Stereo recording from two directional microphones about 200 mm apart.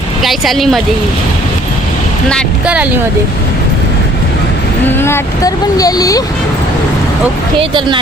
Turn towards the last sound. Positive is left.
turn(degrees=15)  # may be behind; listen again after turning